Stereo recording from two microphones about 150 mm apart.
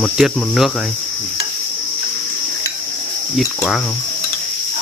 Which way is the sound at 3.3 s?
Centre (ahead or behind).